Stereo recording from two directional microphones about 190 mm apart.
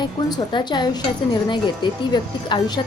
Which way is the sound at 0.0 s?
25° left (ahead or behind).